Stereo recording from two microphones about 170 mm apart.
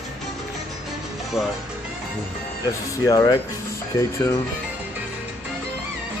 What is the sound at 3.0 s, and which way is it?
Speech, 20° left (ahead or behind).